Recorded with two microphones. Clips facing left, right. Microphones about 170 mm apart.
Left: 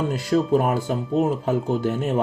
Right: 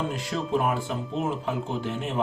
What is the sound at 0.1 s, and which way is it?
Speech, 40° left (ahead or behind).